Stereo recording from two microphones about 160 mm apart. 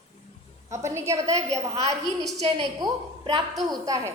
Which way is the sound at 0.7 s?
20° right (ahead or behind).